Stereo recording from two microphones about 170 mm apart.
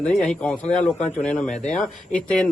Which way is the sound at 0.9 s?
45° left (ahead or behind).